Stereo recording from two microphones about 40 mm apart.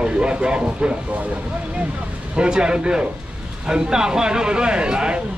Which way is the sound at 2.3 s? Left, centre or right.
Right.